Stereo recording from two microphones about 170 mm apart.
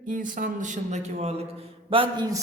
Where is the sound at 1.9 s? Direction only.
30° right (ahead or behind).